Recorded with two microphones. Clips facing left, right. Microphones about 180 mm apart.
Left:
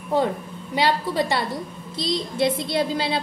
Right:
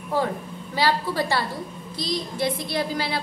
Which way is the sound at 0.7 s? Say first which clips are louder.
Left 2 dB; 20° left (ahead or behind).